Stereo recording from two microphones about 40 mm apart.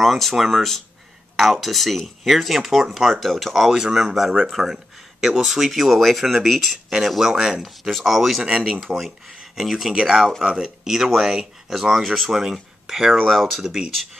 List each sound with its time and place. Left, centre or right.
0.0 s speech: centre
3.7 s speech: centre
7.6 s speech: centre
8.5 s speech: right
9.6 s speech: centre
13.2 s speech: centre